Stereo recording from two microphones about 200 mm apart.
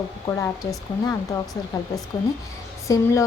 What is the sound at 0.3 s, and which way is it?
Speech, 15° left (ahead or behind).